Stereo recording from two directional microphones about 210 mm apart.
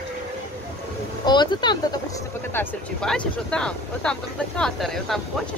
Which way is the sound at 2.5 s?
5° left (ahead or behind).